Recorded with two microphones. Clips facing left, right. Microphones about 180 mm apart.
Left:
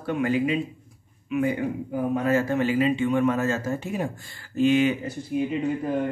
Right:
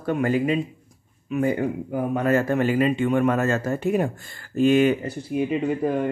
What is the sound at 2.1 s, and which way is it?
A man's voice, 55° right (ahead or behind).